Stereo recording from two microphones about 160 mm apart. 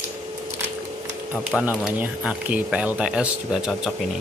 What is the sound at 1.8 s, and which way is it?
Speech, 5° right (ahead or behind).